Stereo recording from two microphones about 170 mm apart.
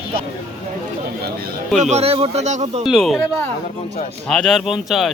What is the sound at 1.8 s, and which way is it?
Speech, 40° right (ahead or behind).